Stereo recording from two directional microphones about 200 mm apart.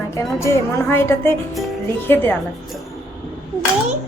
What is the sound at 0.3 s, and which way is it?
A woman's voice, 15° left (ahead or behind).